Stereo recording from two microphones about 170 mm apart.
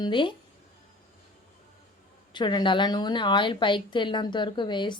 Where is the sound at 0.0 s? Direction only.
30° left (ahead or behind).